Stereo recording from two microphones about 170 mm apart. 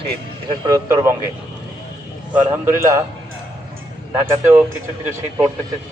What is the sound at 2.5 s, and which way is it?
Speech, 15° right (ahead or behind).